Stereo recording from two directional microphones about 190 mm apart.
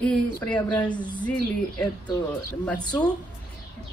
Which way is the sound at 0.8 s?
25° left (ahead or behind).